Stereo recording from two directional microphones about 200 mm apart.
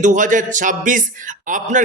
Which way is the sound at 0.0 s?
40° right (ahead or behind).